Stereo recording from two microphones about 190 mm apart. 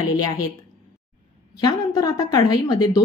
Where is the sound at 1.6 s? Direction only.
20° left (ahead or behind).